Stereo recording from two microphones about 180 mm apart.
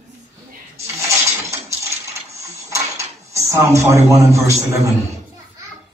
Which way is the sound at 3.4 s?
15° right (ahead or behind).